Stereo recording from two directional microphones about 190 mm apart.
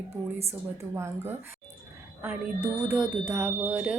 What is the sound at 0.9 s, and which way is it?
Speech, 15° right (ahead or behind).